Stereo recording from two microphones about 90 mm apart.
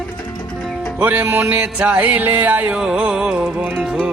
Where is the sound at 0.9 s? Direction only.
20° right (ahead or behind).